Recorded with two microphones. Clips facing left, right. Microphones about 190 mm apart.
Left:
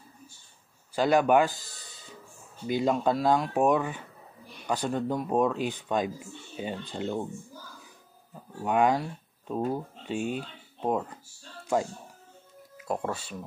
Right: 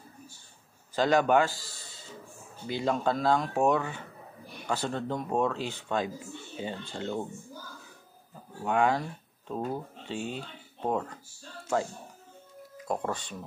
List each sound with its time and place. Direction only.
0.9 s a man's voice: 10° left (ahead or behind)
8.6 s speech: 15° left (ahead or behind)
12.8 s speech: 5° left (ahead or behind)